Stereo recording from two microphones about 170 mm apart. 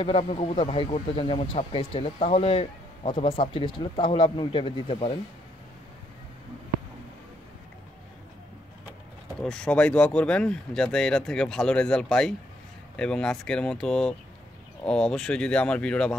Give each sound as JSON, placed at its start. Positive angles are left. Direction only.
{"t": 0.0, "sound": "speech", "side_deg": 35}
{"t": 9.4, "sound": "speech", "side_deg": 5}